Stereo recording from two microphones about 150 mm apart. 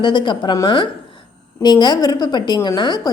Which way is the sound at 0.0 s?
30° left (ahead or behind).